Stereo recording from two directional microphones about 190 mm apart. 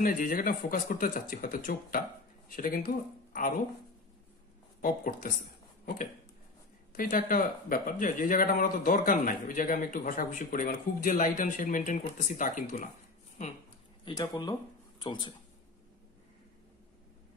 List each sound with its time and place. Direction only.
0.0 s speech: 45° left (ahead or behind)
4.8 s speech: 45° left (ahead or behind)
6.9 s speech: 50° left (ahead or behind)
14.0 s speech: 15° left (ahead or behind)